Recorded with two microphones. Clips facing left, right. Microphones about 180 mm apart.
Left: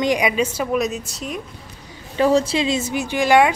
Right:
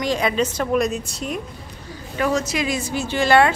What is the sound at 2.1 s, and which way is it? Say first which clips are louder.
Speech: left 5 dB; 30° left (ahead or behind).